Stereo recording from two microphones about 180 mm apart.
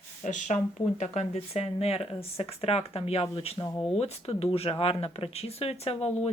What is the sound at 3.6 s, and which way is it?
Speech, 15° left (ahead or behind).